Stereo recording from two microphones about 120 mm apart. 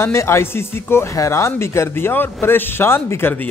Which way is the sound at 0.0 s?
20° left (ahead or behind).